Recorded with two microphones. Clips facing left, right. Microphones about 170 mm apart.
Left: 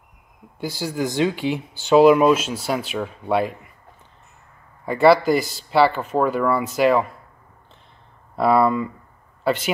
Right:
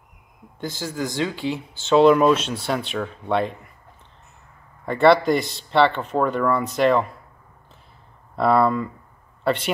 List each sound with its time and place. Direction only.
0.6 s speech: 10° left (ahead or behind)
4.8 s speech: 5° left (ahead or behind)
8.4 s speech: 5° left (ahead or behind)